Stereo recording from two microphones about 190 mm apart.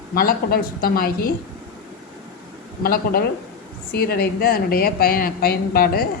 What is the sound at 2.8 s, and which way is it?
A woman's voice, 50° left (ahead or behind).